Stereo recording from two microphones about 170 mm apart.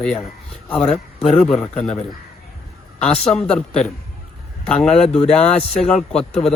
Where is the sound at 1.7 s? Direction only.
40° left (ahead or behind).